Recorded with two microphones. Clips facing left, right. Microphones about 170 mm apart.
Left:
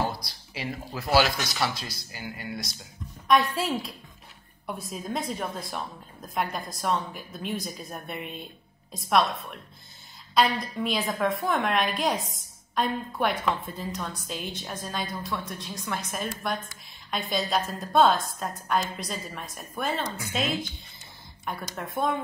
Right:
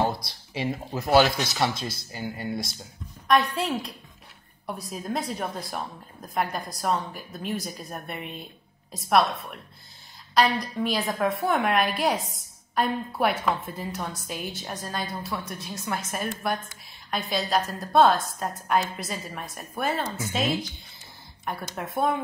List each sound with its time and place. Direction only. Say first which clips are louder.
0.7 s speech: right 3 dB; 20° right (ahead or behind)
3.3 s a woman's voice: even; centre (ahead or behind)
10.3 s a woman's voice: right 1 dB; centre (ahead or behind)
21.7 s a woman's voice: right 2 dB; centre (ahead or behind)